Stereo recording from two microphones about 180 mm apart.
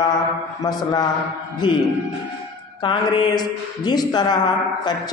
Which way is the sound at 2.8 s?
25° left (ahead or behind).